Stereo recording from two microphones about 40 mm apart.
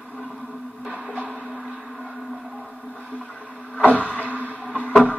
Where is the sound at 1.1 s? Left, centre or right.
Right.